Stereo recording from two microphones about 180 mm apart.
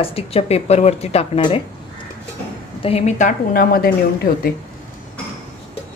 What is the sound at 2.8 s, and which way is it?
A woman's voice, 35° left (ahead or behind).